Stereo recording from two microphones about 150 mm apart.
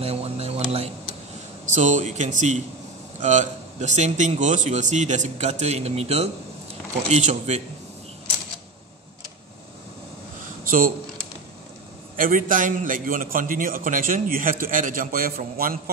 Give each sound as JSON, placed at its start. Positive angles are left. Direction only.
{"t": 0.0, "sound": "a sound", "side_deg": -45}
{"t": 1.7, "sound": "a man's voice", "side_deg": -55}
{"t": 12.2, "sound": "a man's voice", "side_deg": -65}